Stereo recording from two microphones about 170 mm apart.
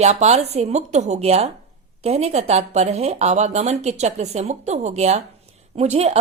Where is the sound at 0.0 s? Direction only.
40° right (ahead or behind).